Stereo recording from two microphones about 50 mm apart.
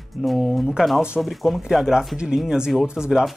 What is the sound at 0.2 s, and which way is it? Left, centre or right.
A man's voice, centre.